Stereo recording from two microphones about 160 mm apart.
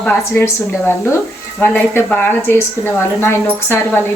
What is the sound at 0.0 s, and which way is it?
Speech, 10° left (ahead or behind).